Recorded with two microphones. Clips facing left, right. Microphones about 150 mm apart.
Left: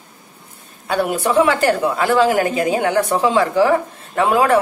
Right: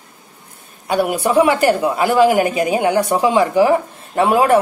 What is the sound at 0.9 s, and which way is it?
A woman's voice, 10° right (ahead or behind).